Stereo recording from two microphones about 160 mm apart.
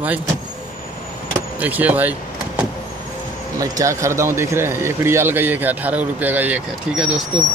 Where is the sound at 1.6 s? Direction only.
10° right (ahead or behind).